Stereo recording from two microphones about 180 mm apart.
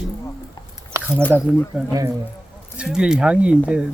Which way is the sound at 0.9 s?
15° right (ahead or behind).